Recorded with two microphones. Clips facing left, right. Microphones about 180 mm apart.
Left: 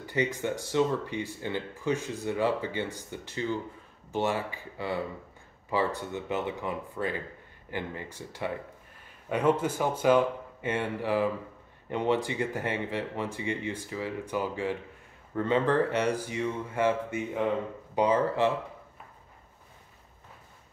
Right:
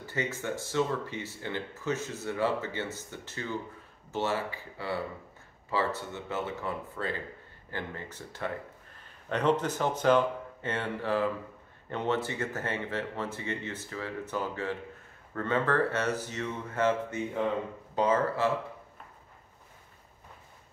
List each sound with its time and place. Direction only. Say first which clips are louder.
0.0 s speech: left 4 dB; 15° left (ahead or behind)